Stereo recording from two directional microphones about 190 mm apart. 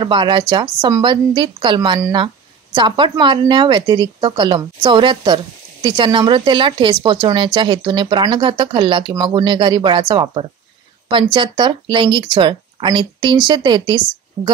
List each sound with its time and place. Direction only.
0.0 s speech: 25° right (ahead or behind)